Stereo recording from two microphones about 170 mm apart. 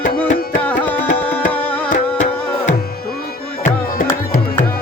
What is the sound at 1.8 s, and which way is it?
Music, 45° left (ahead or behind).